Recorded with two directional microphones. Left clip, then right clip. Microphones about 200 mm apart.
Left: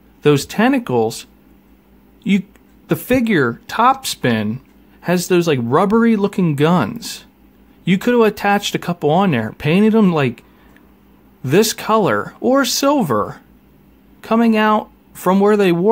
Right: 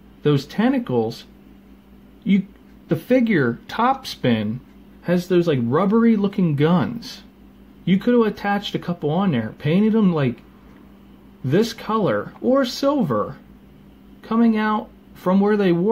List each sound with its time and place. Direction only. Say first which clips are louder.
0.2 s speech: left 6 dB; 40° left (ahead or behind)
2.9 s speech: left 2 dB; 30° left (ahead or behind)
11.4 s speech: left 6 dB; 35° left (ahead or behind)